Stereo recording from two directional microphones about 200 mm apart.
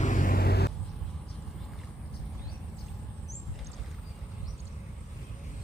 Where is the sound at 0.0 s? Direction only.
40° left (ahead or behind).